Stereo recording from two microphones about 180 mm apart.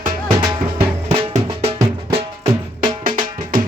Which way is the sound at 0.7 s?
30° right (ahead or behind).